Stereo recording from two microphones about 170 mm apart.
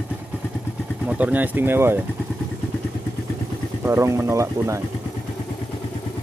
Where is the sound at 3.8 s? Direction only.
15° right (ahead or behind).